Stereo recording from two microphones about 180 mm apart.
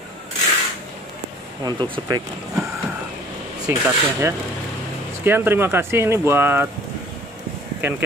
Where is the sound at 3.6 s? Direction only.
15° right (ahead or behind).